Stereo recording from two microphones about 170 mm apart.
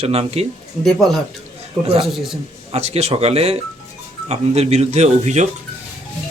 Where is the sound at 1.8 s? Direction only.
35° right (ahead or behind).